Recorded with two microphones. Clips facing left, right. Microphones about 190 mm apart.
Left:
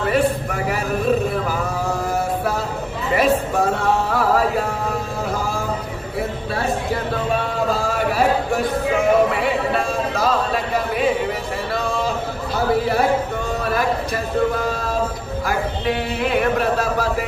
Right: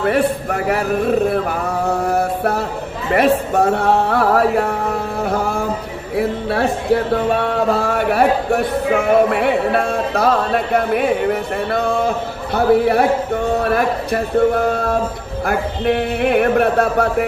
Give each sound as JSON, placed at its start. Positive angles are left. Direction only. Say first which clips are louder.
{"t": 0.0, "sound": "a man's voice", "louder": "right 2 dB", "side_deg": -60}
{"t": 1.3, "sound": "a sound", "louder": "right 4 dB", "side_deg": -60}
{"t": 6.1, "sound": "a man's voice", "louder": "right 7 dB", "side_deg": -65}